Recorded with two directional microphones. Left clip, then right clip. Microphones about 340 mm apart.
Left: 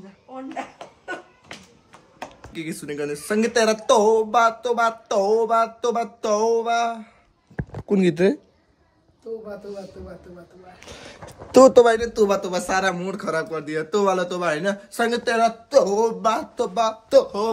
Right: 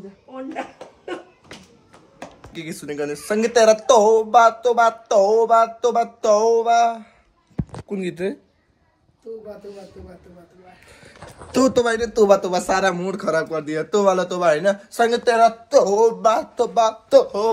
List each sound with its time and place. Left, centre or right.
2.5 s speech: centre
7.9 s speech: left
10.9 s speech: left
12.0 s speech: centre